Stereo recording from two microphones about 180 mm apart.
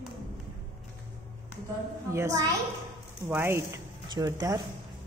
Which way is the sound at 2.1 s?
20° right (ahead or behind).